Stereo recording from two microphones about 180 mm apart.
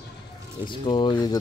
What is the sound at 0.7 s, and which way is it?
Speech, 25° left (ahead or behind).